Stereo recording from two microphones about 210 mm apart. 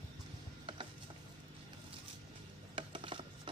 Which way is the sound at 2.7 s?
25° right (ahead or behind).